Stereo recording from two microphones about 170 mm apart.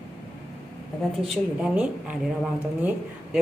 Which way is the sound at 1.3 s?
5° right (ahead or behind).